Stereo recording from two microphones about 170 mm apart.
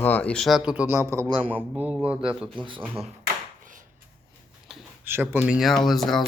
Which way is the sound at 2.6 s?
30° right (ahead or behind).